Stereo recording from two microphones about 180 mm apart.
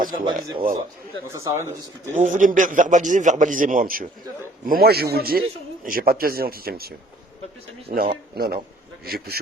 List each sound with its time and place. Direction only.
0.3 s a man's voice: 50° right (ahead or behind)
1.3 s speech: 15° right (ahead or behind)
2.1 s a man's voice: 45° right (ahead or behind)
7.9 s speech: 55° right (ahead or behind)